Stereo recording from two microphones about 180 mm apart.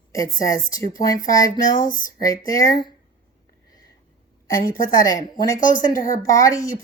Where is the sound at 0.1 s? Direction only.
20° left (ahead or behind).